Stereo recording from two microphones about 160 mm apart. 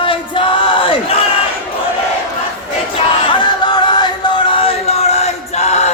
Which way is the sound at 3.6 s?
30° left (ahead or behind).